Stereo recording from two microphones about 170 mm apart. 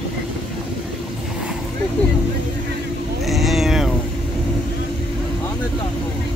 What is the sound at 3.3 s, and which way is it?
Cat, centre (ahead or behind).